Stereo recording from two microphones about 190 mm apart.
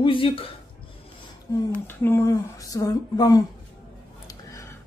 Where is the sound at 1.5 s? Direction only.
20° left (ahead or behind).